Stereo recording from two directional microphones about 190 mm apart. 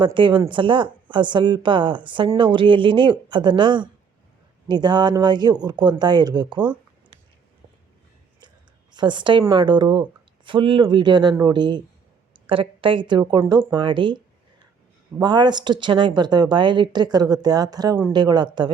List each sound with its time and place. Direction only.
0.0 s a woman's voice: 25° right (ahead or behind)
8.9 s a woman's voice: 25° right (ahead or behind)
15.2 s a woman's voice: 25° right (ahead or behind)